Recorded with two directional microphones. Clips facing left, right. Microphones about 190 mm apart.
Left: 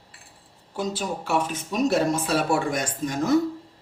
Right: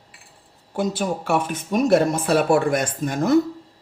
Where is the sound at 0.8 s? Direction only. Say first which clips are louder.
Right 5 dB; 55° right (ahead or behind).